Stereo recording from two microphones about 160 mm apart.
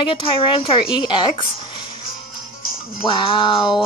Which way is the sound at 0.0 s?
30° left (ahead or behind).